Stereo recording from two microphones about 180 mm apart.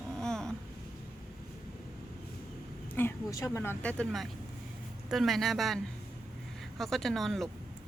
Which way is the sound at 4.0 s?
Centre (ahead or behind).